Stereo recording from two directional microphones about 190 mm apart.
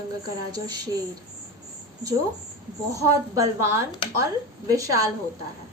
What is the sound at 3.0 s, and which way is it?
A woman's voice, 20° right (ahead or behind).